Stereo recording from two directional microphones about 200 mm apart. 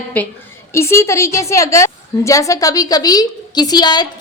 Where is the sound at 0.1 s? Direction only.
5° left (ahead or behind).